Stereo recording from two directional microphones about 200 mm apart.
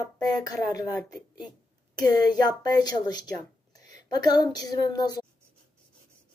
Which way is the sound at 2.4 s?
20° left (ahead or behind).